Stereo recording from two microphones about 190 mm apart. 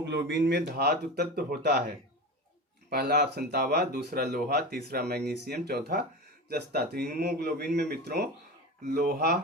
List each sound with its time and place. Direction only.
0.0 s speech: 65° right (ahead or behind)
2.9 s speech: 55° right (ahead or behind)